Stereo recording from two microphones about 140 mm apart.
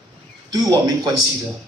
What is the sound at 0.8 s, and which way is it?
Speech, 25° right (ahead or behind).